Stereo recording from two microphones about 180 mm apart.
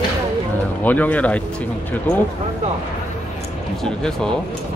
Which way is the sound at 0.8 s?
10° left (ahead or behind).